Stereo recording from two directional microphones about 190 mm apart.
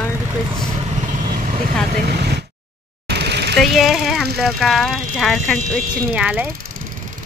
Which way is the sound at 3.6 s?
Centre (ahead or behind).